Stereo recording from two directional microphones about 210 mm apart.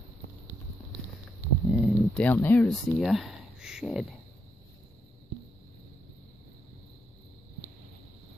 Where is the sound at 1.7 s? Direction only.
Centre (ahead or behind).